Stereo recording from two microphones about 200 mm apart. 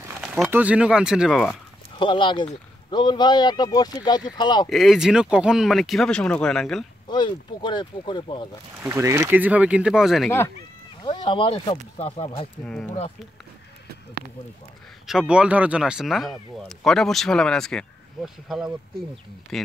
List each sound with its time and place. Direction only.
0.2 s speech: 5° right (ahead or behind)
2.0 s speech: 25° left (ahead or behind)
4.6 s speech: centre (ahead or behind)
7.1 s speech: 20° left (ahead or behind)
8.8 s speech: 15° right (ahead or behind)
11.0 s speech: 25° left (ahead or behind)
12.6 s speech: 5° left (ahead or behind)
15.0 s speech: 5° right (ahead or behind)